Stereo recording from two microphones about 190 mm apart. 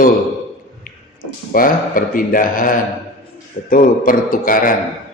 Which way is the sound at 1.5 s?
50° left (ahead or behind).